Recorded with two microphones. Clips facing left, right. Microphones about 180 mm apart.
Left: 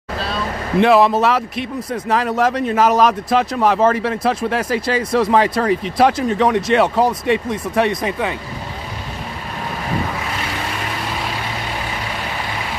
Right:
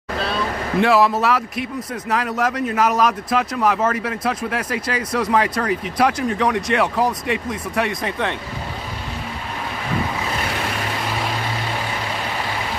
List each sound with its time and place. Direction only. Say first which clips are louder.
0.7 s speech: left 4 dB; 20° left (ahead or behind)